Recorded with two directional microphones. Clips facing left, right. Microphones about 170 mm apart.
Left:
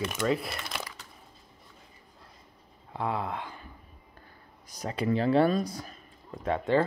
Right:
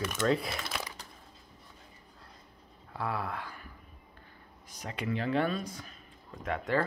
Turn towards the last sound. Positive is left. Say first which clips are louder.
# left 5 dB
turn(degrees=30)  # may be behind; listen again after turning